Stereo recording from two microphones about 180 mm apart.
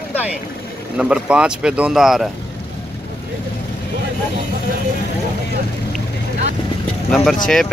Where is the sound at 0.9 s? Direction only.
5° right (ahead or behind).